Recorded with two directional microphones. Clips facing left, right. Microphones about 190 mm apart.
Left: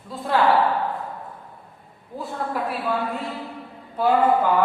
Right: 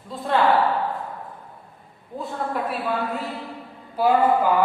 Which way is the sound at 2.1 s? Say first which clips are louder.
Even; centre (ahead or behind).